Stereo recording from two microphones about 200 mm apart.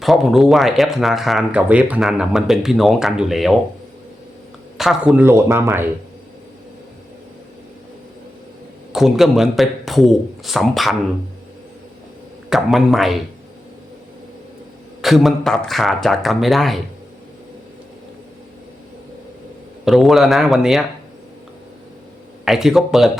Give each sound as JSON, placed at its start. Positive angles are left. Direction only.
{"t": 0.0, "sound": "speech", "side_deg": 0}
{"t": 4.8, "sound": "speech", "side_deg": -5}
{"t": 8.9, "sound": "speech", "side_deg": 0}
{"t": 12.5, "sound": "speech", "side_deg": 0}
{"t": 15.0, "sound": "speech", "side_deg": 0}
{"t": 19.8, "sound": "speech", "side_deg": 0}
{"t": 22.4, "sound": "speech", "side_deg": 0}